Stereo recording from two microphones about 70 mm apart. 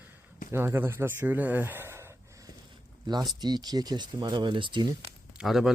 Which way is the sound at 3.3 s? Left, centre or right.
Right.